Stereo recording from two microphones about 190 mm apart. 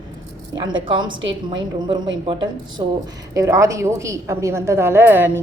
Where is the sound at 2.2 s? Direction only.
25° right (ahead or behind).